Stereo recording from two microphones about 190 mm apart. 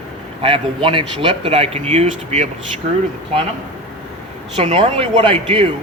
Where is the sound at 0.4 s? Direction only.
25° right (ahead or behind).